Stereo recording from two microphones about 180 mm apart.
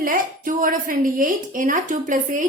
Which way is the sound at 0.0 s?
50° right (ahead or behind).